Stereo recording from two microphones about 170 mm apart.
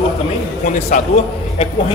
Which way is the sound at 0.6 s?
50° left (ahead or behind).